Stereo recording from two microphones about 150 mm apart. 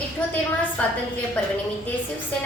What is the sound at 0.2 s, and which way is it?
Speech, 10° left (ahead or behind).